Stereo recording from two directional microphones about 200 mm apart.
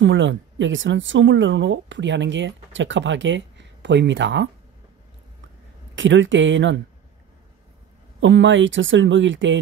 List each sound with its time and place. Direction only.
0.0 s speech: 65° right (ahead or behind)
5.9 s speech: 65° right (ahead or behind)
8.2 s speech: 65° right (ahead or behind)